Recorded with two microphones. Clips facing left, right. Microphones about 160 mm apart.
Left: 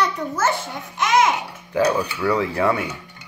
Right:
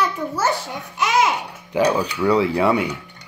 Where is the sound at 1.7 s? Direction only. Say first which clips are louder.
Right 1 dB; 15° right (ahead or behind).